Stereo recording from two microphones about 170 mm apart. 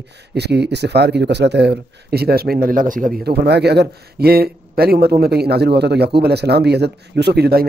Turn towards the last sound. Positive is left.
turn(degrees=-70)  # may be behind; listen again after turning